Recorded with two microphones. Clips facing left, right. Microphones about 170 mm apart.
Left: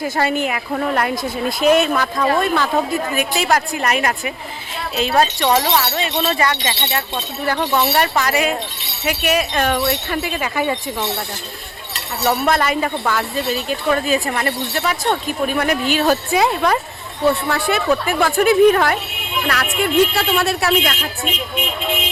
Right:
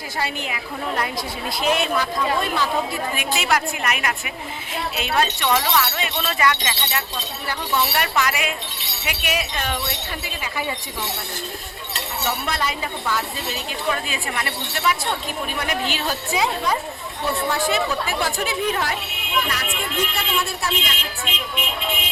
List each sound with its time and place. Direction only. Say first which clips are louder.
0.0 s a woman's voice: left 9 dB; 50° left (ahead or behind); by 7.0 s 35° left (ahead or behind)
7.4 s a woman's voice: left 6 dB; 50° left (ahead or behind)
7.9 s a woman's voice: left 5 dB; 35° left (ahead or behind); by 10.8 s 55° left (ahead or behind)
12.2 s a woman's voice: left 9 dB; 50° left (ahead or behind)
19.8 s speech: left 13 dB; 75° left (ahead or behind)